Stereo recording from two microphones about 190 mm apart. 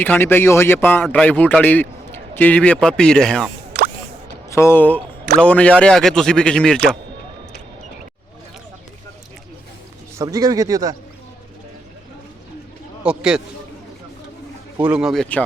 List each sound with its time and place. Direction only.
0.0 s a man's voice: 10° left (ahead or behind)
3.7 s a sound: 55° right (ahead or behind)
4.4 s speech: 15° left (ahead or behind)
10.2 s a man's voice: 20° right (ahead or behind)
13.0 s a man's voice: 5° right (ahead or behind)
14.8 s speech: 5° right (ahead or behind)